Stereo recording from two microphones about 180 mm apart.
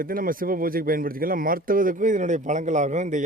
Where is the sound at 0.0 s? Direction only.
50° right (ahead or behind).